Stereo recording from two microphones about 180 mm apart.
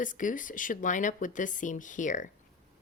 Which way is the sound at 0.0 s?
45° left (ahead or behind).